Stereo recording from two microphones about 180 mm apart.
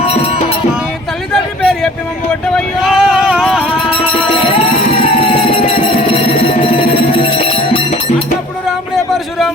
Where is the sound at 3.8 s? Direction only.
30° left (ahead or behind).